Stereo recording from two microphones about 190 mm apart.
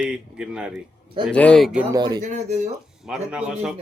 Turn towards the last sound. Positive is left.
turn(degrees=-5)  # may be behind; listen again after turning